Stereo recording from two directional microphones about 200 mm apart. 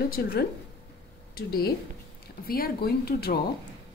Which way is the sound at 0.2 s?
55° left (ahead or behind).